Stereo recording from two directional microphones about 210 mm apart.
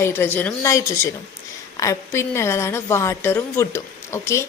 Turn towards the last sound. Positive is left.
turn(degrees=15)  # may be behind; listen again after turning